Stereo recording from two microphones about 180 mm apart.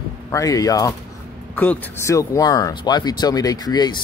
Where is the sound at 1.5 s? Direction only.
10° left (ahead or behind).